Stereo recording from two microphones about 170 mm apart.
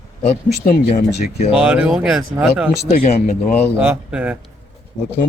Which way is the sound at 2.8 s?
40° left (ahead or behind).